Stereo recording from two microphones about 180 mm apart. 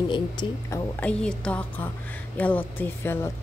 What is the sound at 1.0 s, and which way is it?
Speech, 5° left (ahead or behind).